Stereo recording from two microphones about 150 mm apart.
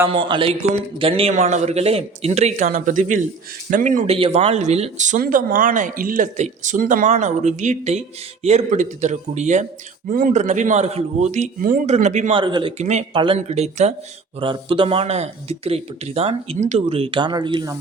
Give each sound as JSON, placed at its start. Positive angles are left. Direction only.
{"t": 0.1, "sound": "speech", "side_deg": -35}
{"t": 4.0, "sound": "speech", "side_deg": -45}
{"t": 10.1, "sound": "speech", "side_deg": -65}
{"t": 12.3, "sound": "speech", "side_deg": -30}
{"t": 12.8, "sound": "speech", "side_deg": -50}
{"t": 14.3, "sound": "speech", "side_deg": -35}